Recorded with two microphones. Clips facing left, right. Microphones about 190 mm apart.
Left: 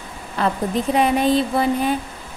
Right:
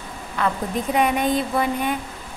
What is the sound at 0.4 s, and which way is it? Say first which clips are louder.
Speech: left 3 dB; 30° left (ahead or behind).